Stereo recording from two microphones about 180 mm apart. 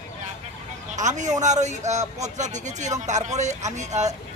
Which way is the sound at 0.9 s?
40° right (ahead or behind).